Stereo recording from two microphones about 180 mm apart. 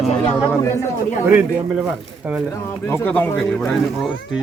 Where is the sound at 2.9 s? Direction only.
10° left (ahead or behind).